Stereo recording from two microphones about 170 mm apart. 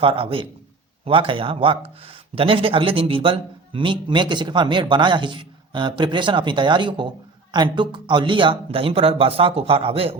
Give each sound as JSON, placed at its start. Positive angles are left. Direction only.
{"t": 0.0, "sound": "speech", "side_deg": -30}